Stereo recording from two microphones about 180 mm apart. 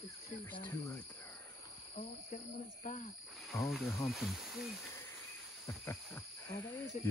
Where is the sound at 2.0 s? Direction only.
40° left (ahead or behind).